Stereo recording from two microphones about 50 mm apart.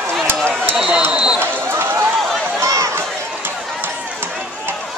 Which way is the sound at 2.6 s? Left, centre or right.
Right.